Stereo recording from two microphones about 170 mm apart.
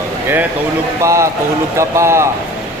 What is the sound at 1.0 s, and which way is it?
Speech, 15° right (ahead or behind).